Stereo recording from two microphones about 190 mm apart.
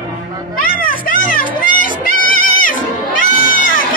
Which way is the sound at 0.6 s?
50° left (ahead or behind).